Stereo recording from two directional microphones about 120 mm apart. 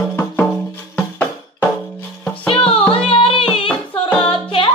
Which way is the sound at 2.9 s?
50° left (ahead or behind).